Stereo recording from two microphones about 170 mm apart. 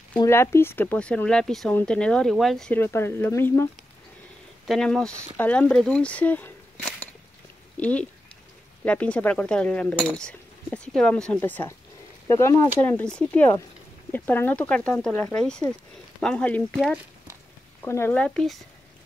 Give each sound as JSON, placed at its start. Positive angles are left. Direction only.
{"t": 0.2, "sound": "speech", "side_deg": 15}
{"t": 4.6, "sound": "speech", "side_deg": 5}